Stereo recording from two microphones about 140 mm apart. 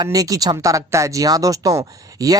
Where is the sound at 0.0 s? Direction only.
25° right (ahead or behind).